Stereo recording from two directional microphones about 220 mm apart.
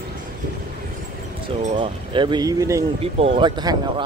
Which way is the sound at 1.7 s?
20° right (ahead or behind).